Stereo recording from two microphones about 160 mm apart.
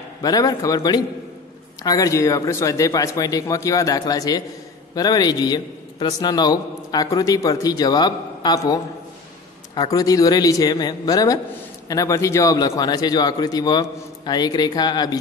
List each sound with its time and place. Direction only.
0.2 s a man's voice: 20° left (ahead or behind)
9.8 s a man's voice: 20° left (ahead or behind)